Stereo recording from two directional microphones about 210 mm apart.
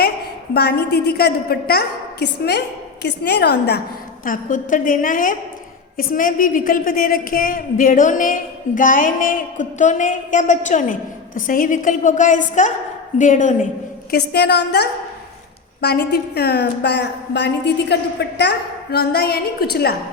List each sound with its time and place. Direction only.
0.5 s a woman's voice: 50° left (ahead or behind)
4.3 s a woman's voice: 40° left (ahead or behind)
14.1 s a woman's voice: 50° left (ahead or behind)